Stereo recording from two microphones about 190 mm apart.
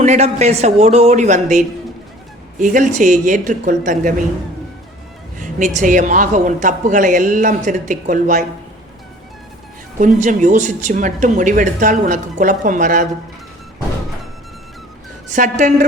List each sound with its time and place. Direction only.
0.0 s speech: 35° right (ahead or behind)
5.4 s speech: 40° right (ahead or behind)
10.0 s speech: 40° right (ahead or behind)
15.3 s speech: 40° right (ahead or behind)